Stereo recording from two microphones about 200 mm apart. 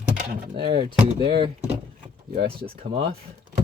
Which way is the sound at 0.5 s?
25° right (ahead or behind).